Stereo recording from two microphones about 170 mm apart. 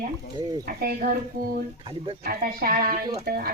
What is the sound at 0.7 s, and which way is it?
A woman's voice, 65° right (ahead or behind).